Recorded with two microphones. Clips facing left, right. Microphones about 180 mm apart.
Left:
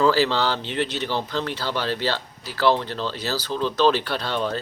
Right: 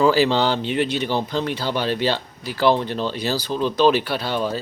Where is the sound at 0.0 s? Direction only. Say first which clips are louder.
Right 3 dB; 15° right (ahead or behind).